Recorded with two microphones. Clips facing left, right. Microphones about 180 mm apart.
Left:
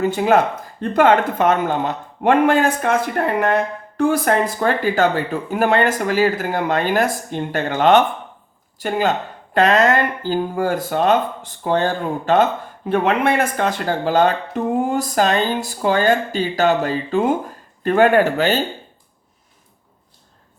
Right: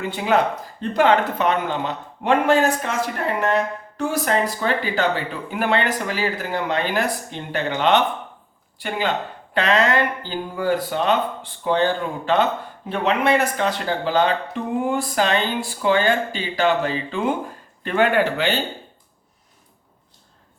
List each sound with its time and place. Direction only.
0.0 s speech: 45° left (ahead or behind)